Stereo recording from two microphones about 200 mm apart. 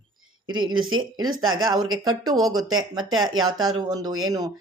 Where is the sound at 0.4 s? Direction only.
90° right.